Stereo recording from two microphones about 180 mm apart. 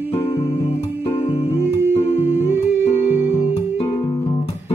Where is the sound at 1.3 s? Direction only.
35° left (ahead or behind).